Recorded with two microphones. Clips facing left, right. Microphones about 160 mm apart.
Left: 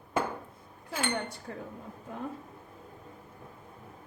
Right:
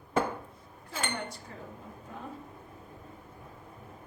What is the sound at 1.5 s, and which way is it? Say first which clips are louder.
Speech: left 6 dB; 65° left (ahead or behind).